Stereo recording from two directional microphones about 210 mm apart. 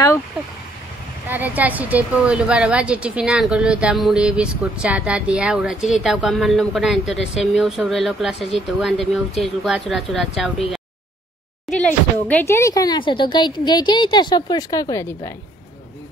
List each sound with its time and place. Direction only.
1.3 s a woman's voice: 10° right (ahead or behind)
11.7 s speech: 5° left (ahead or behind)